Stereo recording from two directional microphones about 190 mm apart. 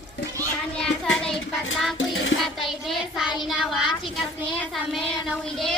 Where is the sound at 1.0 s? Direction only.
5° left (ahead or behind).